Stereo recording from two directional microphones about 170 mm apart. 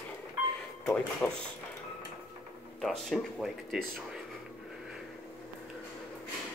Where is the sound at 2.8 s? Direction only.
Centre (ahead or behind).